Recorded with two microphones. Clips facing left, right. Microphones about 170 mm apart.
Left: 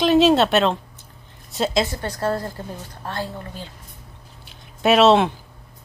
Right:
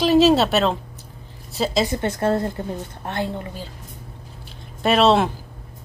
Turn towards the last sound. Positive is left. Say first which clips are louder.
# left 2 dB
turn(degrees=0)  # may be behind; listen again after turning